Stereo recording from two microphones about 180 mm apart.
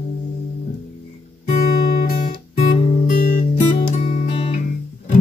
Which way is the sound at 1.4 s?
40° left (ahead or behind).